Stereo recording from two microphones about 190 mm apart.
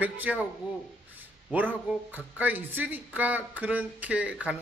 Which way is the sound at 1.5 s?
10° right (ahead or behind).